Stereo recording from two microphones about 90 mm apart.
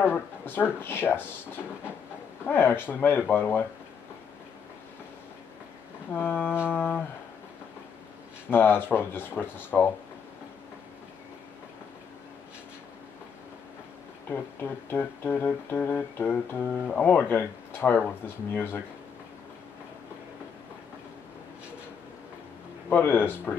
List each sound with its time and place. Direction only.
0.0 s speech: 25° left (ahead or behind)
2.4 s speech: 25° left (ahead or behind)
6.1 s speech: 20° left (ahead or behind)
8.5 s speech: 25° left (ahead or behind)
14.3 s speech: 25° left (ahead or behind)
22.8 s speech: 20° left (ahead or behind)